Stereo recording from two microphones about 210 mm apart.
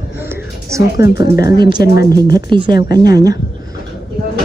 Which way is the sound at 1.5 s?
20° right (ahead or behind).